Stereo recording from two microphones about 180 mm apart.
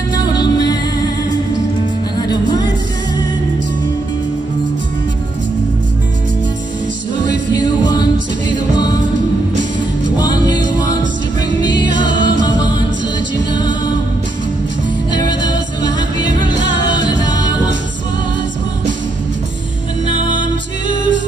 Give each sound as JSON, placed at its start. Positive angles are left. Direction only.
{"t": 0.1, "sound": "music", "side_deg": 25}
{"t": 7.5, "sound": "music", "side_deg": 25}
{"t": 10.1, "sound": "music", "side_deg": 25}
{"t": 15.1, "sound": "music", "side_deg": 25}
{"t": 16.9, "sound": "music", "side_deg": 25}